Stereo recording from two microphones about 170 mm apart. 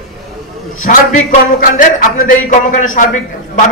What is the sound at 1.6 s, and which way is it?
A man's voice, 55° left (ahead or behind).